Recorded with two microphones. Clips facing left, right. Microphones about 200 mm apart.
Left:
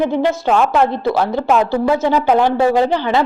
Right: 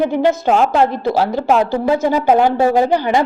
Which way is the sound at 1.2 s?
35° right (ahead or behind).